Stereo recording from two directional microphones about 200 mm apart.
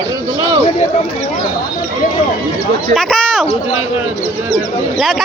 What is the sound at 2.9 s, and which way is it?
Speech, centre (ahead or behind).